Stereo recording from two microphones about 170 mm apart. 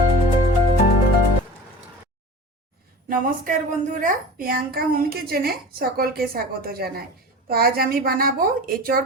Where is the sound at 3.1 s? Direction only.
55° right (ahead or behind).